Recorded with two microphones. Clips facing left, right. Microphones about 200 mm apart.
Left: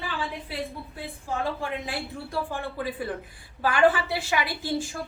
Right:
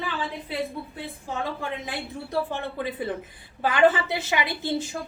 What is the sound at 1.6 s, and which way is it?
A woman's voice, 20° right (ahead or behind).